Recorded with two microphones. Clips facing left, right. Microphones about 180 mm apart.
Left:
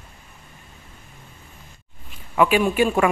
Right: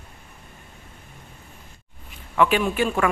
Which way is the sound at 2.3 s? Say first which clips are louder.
Left 3 dB; 10° left (ahead or behind).